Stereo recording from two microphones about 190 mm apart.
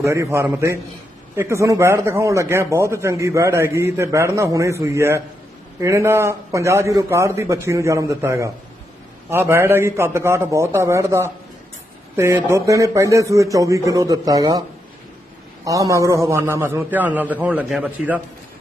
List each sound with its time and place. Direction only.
0.0 s speech: 15° right (ahead or behind)
15.6 s speech: 15° right (ahead or behind)